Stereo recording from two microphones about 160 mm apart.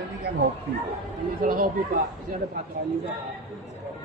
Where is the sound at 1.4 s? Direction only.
60° right (ahead or behind).